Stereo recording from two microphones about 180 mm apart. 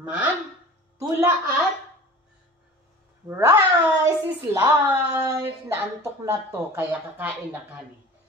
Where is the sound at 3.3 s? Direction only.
15° right (ahead or behind).